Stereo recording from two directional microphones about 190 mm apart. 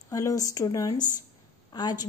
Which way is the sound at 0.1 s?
20° left (ahead or behind).